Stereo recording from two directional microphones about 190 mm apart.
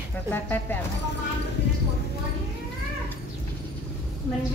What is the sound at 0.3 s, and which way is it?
Speech, 10° left (ahead or behind).